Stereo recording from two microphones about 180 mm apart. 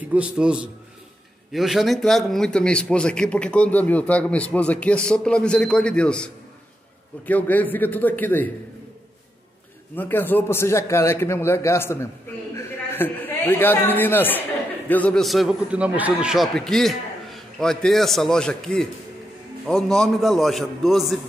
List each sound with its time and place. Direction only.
0.1 s a man's voice: 5° right (ahead or behind); by 8.5 s 10° left (ahead or behind)
9.9 s a man's voice: 10° left (ahead or behind)